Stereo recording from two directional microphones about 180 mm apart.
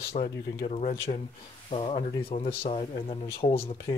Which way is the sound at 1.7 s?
30° left (ahead or behind).